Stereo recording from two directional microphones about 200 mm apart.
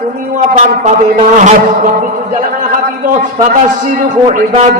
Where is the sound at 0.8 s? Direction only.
35° right (ahead or behind).